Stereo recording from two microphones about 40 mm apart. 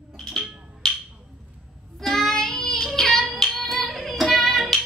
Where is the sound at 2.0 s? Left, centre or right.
Centre.